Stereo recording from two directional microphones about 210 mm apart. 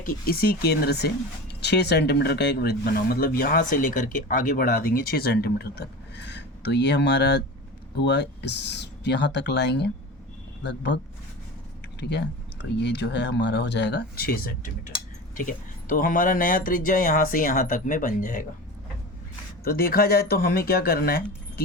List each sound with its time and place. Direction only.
0.3 s speech: 45° left (ahead or behind)
19.6 s speech: 45° left (ahead or behind)